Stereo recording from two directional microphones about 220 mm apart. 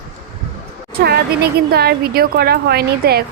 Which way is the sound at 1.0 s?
45° right (ahead or behind).